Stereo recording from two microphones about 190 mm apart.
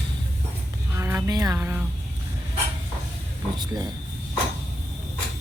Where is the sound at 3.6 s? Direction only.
20° right (ahead or behind).